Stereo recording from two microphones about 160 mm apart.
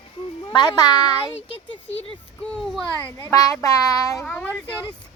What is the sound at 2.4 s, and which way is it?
Speech, 5° left (ahead or behind).